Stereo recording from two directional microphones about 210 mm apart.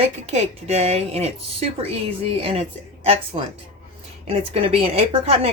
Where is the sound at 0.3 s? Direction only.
30° right (ahead or behind).